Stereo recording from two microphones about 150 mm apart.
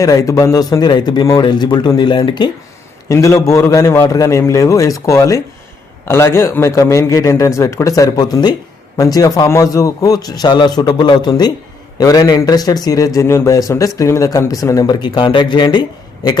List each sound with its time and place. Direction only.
0.0 s speech: 20° left (ahead or behind)
3.1 s speech: 20° left (ahead or behind)